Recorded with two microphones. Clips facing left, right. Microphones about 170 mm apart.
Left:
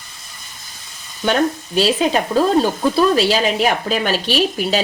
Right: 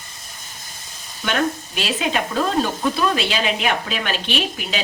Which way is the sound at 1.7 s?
35° left (ahead or behind).